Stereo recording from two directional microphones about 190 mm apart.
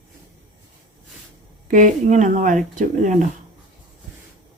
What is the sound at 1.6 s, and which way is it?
Speech, 45° right (ahead or behind).